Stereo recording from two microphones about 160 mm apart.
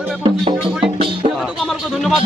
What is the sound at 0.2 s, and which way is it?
Speech, 30° right (ahead or behind).